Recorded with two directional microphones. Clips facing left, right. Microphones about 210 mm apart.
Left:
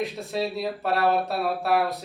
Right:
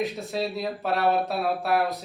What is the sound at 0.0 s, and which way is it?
Speech, centre (ahead or behind).